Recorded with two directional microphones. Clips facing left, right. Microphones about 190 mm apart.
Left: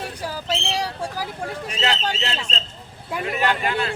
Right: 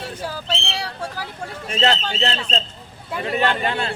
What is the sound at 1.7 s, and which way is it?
Speech, 40° right (ahead or behind).